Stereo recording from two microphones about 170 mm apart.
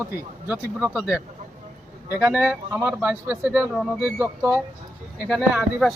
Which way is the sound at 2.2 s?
10° right (ahead or behind).